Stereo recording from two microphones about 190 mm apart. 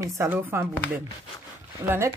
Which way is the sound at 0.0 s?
15° right (ahead or behind).